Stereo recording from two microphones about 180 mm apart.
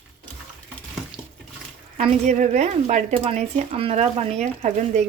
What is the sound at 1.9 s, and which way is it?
Speech, 40° right (ahead or behind).